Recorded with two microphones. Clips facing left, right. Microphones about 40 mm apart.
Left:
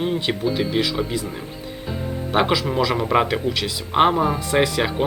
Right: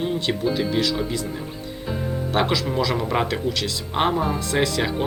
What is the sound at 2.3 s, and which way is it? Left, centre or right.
A man's voice, centre.